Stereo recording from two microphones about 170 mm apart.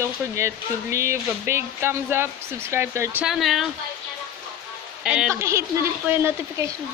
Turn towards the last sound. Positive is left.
turn(degrees=-15)  # may be behind; listen again after turning